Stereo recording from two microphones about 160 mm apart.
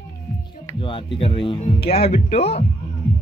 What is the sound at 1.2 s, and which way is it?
Speech, 35° left (ahead or behind).